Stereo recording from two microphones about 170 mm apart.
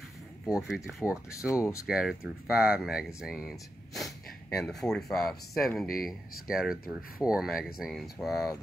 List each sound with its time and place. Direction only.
0.5 s speech: 5° right (ahead or behind)
1.5 s speech: 15° left (ahead or behind)
1.9 s speech: 5° right (ahead or behind)